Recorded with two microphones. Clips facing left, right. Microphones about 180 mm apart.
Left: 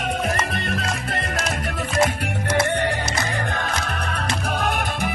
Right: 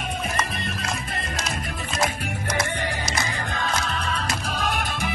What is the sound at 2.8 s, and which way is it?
Music, 65° left (ahead or behind).